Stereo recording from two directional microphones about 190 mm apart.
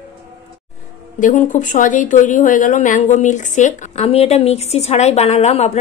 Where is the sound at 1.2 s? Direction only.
40° left (ahead or behind).